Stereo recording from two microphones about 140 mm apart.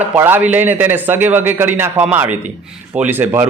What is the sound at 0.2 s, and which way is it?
Speech, 15° right (ahead or behind).